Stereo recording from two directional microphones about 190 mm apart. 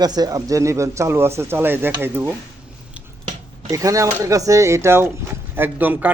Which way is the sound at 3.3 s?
20° right (ahead or behind).